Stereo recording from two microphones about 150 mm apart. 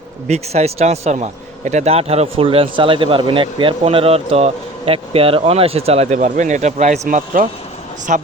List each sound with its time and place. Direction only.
0.3 s a man's voice: 45° right (ahead or behind)
6.1 s speech: 60° right (ahead or behind)